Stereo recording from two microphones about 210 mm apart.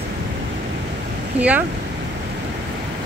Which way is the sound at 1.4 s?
5° right (ahead or behind).